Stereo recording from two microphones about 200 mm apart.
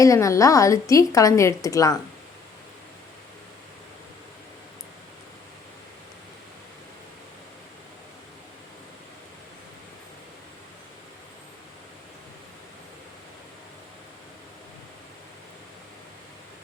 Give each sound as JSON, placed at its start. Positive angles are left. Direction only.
{"t": 0.0, "sound": "a woman's voice", "side_deg": 15}